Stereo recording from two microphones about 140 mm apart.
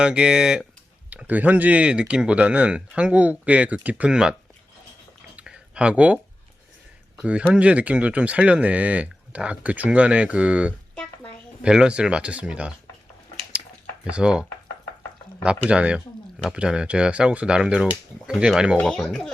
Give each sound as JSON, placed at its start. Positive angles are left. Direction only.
{"t": 0.0, "sound": "speech", "side_deg": -5}
{"t": 5.4, "sound": "a sound", "side_deg": -5}
{"t": 7.2, "sound": "speech", "side_deg": -10}
{"t": 14.0, "sound": "speech", "side_deg": -5}
{"t": 15.6, "sound": "speech", "side_deg": -10}